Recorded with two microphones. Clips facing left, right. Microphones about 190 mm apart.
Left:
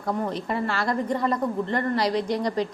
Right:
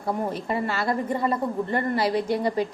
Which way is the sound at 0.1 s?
10° right (ahead or behind).